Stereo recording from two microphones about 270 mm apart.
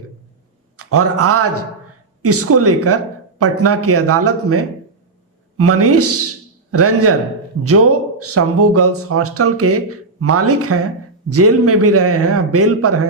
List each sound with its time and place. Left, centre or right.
0.8 s a man's voice: right